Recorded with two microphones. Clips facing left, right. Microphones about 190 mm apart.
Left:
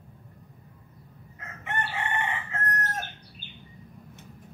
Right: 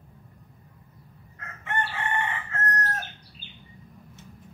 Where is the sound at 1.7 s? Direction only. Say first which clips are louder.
Right 1 dB; 20° left (ahead or behind).